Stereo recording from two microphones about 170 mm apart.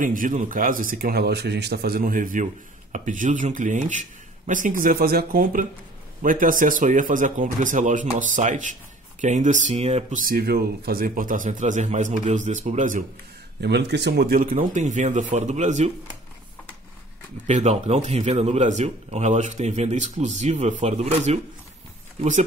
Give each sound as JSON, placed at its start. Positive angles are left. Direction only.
{"t": 0.0, "sound": "speech", "side_deg": -50}
{"t": 10.2, "sound": "speech", "side_deg": -60}
{"t": 13.6, "sound": "speech", "side_deg": -80}
{"t": 17.5, "sound": "speech", "side_deg": -40}